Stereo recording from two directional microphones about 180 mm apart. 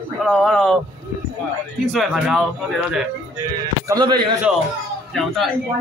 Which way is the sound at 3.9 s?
25° right (ahead or behind).